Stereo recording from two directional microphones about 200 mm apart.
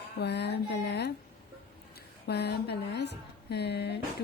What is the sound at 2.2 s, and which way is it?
Speech, 55° left (ahead or behind).